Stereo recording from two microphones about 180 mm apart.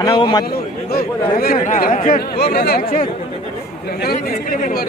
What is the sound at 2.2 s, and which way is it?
Speech, 60° left (ahead or behind).